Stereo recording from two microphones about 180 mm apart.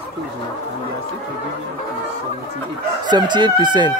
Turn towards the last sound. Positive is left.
turn(degrees=-25)  # may be behind; listen again after turning